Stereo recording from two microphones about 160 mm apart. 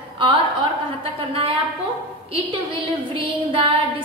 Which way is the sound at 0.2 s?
30° right (ahead or behind).